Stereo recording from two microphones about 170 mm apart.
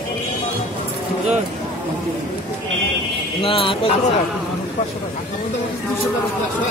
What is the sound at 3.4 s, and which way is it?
Speech, 30° left (ahead or behind).